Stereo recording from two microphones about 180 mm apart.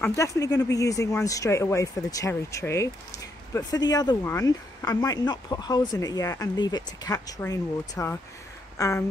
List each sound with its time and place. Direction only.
0.0 s speech: 15° left (ahead or behind)